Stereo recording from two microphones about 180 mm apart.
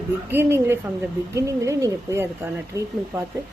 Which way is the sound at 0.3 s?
15° right (ahead or behind).